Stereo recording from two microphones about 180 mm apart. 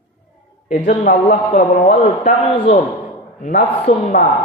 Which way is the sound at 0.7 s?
40° left (ahead or behind).